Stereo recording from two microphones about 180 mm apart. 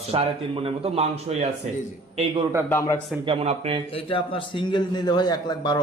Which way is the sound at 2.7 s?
20° left (ahead or behind).